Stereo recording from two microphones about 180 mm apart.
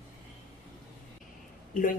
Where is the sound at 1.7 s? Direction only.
50° left (ahead or behind).